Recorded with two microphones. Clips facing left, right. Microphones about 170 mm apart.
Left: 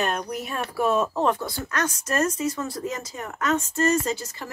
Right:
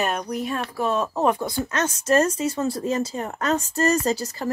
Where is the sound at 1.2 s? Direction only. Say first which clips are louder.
Right 3 dB; 15° right (ahead or behind); by 4.5 s 35° right (ahead or behind).